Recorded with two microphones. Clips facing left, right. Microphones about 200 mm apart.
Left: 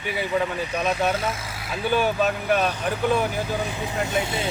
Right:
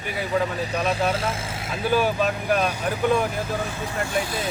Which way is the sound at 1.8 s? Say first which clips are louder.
Even; centre (ahead or behind).